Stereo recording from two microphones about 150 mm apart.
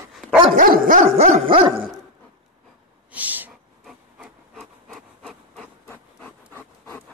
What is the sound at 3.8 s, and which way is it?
Wood, centre (ahead or behind).